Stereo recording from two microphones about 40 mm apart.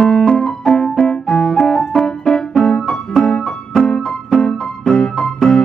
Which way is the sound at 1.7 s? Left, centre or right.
Left.